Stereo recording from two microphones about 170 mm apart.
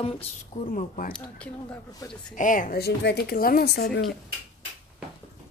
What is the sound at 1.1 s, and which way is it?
Speech, 5° left (ahead or behind).